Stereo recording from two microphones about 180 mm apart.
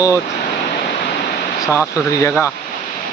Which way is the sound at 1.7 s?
15° left (ahead or behind).